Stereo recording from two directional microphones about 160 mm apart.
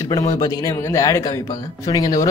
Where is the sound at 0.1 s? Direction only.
25° left (ahead or behind).